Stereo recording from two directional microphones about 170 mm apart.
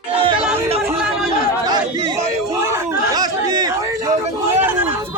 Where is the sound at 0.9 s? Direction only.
5° right (ahead or behind).